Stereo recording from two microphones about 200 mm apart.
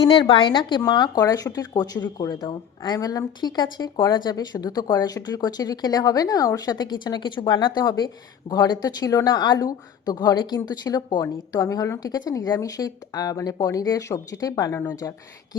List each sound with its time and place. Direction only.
0.1 s speech: 25° left (ahead or behind)